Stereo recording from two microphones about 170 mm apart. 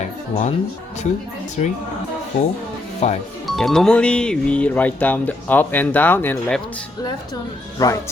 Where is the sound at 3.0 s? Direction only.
40° left (ahead or behind).